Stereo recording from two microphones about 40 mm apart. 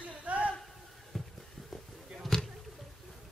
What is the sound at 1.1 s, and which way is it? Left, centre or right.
Music, centre.